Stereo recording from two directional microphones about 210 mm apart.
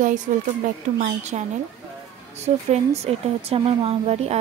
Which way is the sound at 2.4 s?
30° right (ahead or behind).